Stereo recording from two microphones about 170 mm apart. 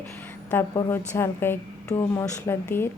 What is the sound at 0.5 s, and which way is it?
A woman's voice, 10° left (ahead or behind).